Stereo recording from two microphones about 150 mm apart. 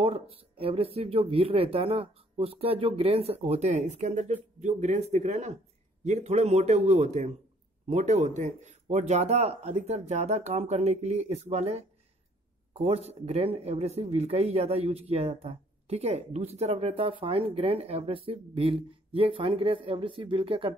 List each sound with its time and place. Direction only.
0.0 s speech: 40° right (ahead or behind)